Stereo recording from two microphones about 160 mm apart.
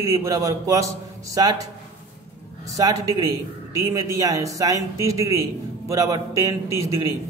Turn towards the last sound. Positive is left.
turn(degrees=-20)  # may be behind; listen again after turning